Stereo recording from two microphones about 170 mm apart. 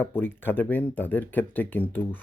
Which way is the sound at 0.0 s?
10° left (ahead or behind).